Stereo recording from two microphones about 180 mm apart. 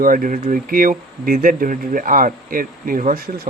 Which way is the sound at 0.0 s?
50° right (ahead or behind).